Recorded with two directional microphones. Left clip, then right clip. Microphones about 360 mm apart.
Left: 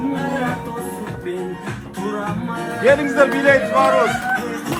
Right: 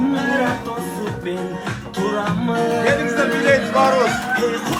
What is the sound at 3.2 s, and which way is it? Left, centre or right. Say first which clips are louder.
Music: left 2 dB; centre.